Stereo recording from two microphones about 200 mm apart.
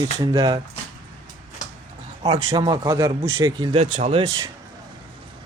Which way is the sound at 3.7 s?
30° right (ahead or behind).